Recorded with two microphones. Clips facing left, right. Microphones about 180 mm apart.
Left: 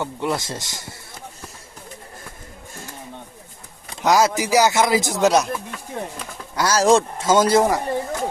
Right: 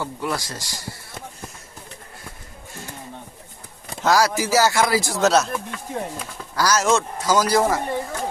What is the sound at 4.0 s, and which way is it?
Speech, 20° left (ahead or behind).